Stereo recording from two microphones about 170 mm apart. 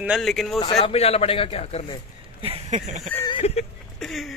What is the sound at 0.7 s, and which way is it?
A man's voice, 35° left (ahead or behind).